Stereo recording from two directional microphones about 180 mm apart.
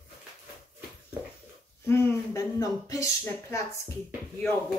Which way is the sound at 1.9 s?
15° left (ahead or behind).